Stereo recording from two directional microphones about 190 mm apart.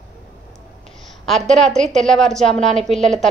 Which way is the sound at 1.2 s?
Centre (ahead or behind).